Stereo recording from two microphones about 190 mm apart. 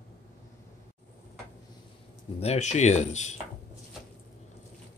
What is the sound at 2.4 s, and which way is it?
Speech, 35° left (ahead or behind).